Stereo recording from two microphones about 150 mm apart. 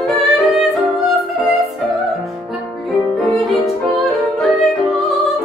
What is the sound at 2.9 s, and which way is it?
Music, centre (ahead or behind).